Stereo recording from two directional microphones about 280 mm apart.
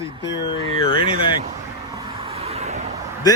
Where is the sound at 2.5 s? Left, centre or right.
Right.